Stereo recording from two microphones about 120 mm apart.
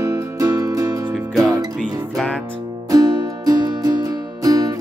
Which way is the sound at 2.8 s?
30° right (ahead or behind).